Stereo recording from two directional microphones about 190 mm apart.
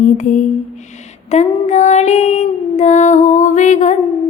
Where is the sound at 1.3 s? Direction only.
40° left (ahead or behind).